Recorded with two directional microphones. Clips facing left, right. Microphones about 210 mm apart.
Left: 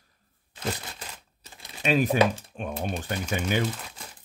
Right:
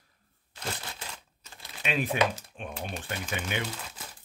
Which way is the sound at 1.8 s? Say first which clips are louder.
Left 6 dB; 40° left (ahead or behind).